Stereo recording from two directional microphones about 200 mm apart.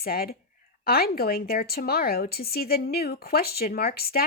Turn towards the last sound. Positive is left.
turn(degrees=50)  # may be behind; listen again after turning